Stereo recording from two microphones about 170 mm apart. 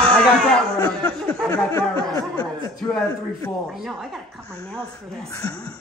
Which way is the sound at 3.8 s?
Centre (ahead or behind).